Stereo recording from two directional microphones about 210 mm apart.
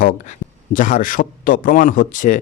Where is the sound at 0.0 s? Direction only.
40° left (ahead or behind).